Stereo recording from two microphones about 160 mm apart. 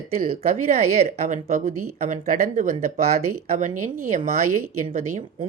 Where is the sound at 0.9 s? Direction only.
40° right (ahead or behind).